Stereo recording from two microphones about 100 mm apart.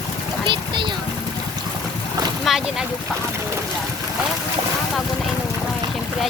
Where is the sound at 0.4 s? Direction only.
55° right (ahead or behind).